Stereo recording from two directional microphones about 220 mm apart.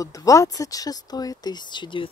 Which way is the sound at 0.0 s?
15° left (ahead or behind).